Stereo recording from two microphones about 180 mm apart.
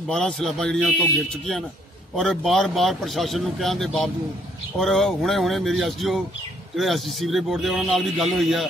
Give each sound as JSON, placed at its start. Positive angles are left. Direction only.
{"t": 0.1, "sound": "speech", "side_deg": 0}
{"t": 2.1, "sound": "speech", "side_deg": 0}